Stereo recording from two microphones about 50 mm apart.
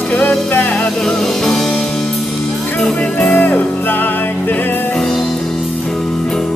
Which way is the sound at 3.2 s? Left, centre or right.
Left.